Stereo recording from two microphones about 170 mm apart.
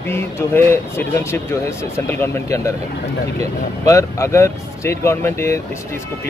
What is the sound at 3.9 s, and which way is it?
Speech, 15° left (ahead or behind).